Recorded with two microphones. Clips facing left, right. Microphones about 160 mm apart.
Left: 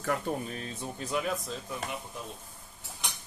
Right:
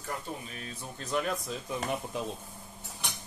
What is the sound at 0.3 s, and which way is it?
Speech, 55° left (ahead or behind).